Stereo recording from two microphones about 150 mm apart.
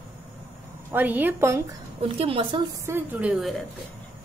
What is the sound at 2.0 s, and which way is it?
Speech, 40° right (ahead or behind).